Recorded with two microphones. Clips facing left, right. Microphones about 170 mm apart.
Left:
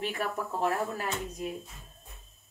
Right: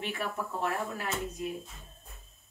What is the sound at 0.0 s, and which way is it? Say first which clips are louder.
Speech: left 2 dB; 40° left (ahead or behind).